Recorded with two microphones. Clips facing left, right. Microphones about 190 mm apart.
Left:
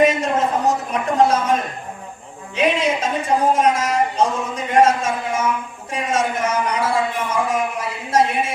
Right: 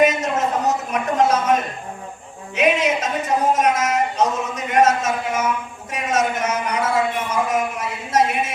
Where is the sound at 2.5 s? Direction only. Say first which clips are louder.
Even; 30° left (ahead or behind).